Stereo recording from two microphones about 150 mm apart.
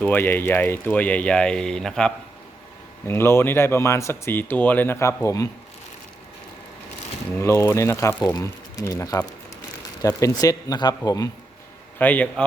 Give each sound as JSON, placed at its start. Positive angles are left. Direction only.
{"t": 0.0, "sound": "speech", "side_deg": 15}
{"t": 3.1, "sound": "speech", "side_deg": 15}
{"t": 7.3, "sound": "speech", "side_deg": 15}
{"t": 11.9, "sound": "speech", "side_deg": 10}